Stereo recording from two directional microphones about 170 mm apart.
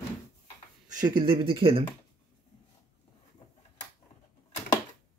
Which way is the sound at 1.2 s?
30° right (ahead or behind).